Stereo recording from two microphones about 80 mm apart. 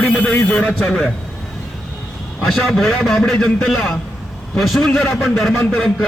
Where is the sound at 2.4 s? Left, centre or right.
Centre.